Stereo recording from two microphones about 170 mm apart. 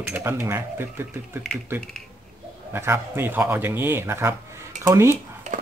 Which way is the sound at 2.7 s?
15° right (ahead or behind).